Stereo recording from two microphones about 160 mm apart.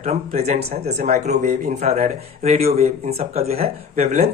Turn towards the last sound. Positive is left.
turn(degrees=-45)  # may be behind; listen again after turning